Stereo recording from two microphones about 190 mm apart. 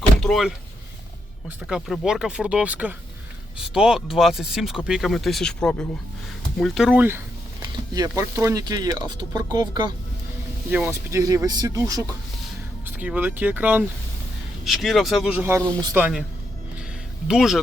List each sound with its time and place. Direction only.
0.2 s speech: centre (ahead or behind)
7.6 s speech: 15° right (ahead or behind)
17.2 s speech: centre (ahead or behind)